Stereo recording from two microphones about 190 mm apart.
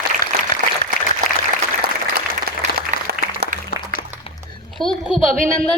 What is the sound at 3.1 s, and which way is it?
Applause, 55° right (ahead or behind).